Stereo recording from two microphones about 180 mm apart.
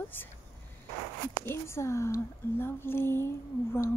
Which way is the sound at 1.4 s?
15° left (ahead or behind).